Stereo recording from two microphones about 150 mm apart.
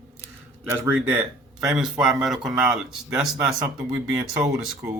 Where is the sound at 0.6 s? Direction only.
20° right (ahead or behind).